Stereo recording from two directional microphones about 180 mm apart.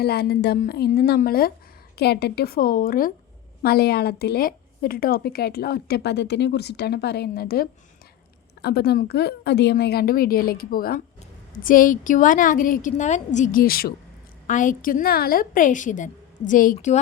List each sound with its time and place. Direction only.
0.0 s a woman's voice: 60° left (ahead or behind); by 17.0 s 40° left (ahead or behind)